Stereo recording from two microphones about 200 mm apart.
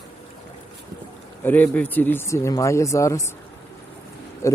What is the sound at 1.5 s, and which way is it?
Speech, 10° left (ahead or behind).